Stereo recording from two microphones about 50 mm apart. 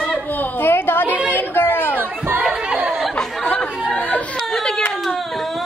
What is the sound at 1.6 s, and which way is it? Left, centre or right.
Chatter, left.